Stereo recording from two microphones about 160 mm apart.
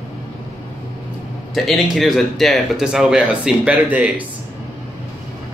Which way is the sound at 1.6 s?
Centre (ahead or behind).